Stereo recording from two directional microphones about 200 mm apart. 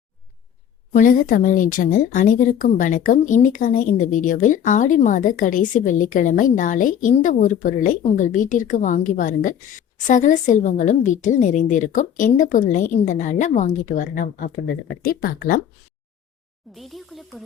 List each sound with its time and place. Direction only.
0.9 s a woman's voice: 40° left (ahead or behind)
14.5 s speech: 65° left (ahead or behind)
15.0 s speech: 45° left (ahead or behind)
16.7 s speech: centre (ahead or behind)